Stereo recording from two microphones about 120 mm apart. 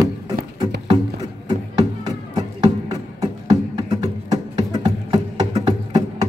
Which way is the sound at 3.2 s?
35° right (ahead or behind).